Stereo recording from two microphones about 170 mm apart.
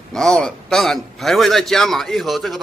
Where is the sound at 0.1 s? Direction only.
5° left (ahead or behind).